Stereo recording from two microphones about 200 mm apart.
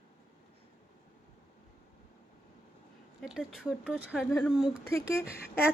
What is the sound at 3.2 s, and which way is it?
Speech, 5° right (ahead or behind).